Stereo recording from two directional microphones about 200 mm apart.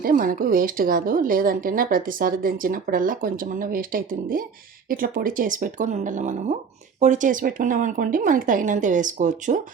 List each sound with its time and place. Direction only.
0.0 s speech: 45° right (ahead or behind)